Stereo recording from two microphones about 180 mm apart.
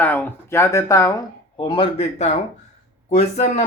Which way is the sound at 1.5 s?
30° left (ahead or behind).